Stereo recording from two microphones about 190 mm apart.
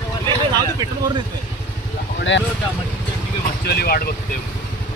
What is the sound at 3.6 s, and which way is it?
Speech, 55° left (ahead or behind).